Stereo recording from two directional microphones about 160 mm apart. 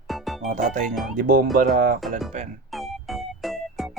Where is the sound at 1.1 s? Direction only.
60° right (ahead or behind).